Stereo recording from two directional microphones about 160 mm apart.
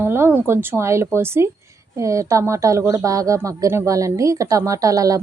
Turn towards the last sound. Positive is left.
turn(degrees=-20)  # may be behind; listen again after turning